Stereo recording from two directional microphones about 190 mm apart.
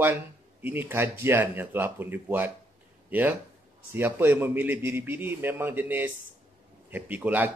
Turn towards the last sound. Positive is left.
turn(degrees=-10)  # may be behind; listen again after turning